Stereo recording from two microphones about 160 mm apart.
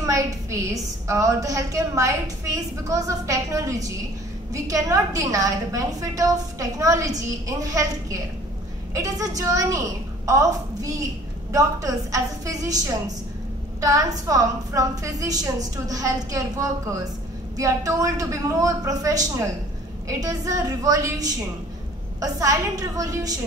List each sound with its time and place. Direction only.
0.0 s a woman's voice: 20° right (ahead or behind)